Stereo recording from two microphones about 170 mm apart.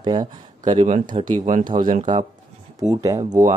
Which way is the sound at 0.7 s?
40° right (ahead or behind).